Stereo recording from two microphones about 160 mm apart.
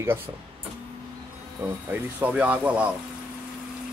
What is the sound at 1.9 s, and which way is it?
Speech, 10° right (ahead or behind).